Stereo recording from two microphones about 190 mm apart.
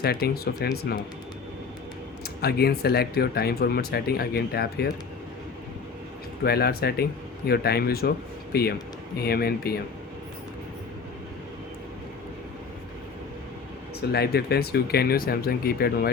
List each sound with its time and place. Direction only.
0.0 s speech: 55° left (ahead or behind)
2.4 s speech: 55° left (ahead or behind)
6.4 s speech: 55° left (ahead or behind)
14.1 s speech: 55° left (ahead or behind)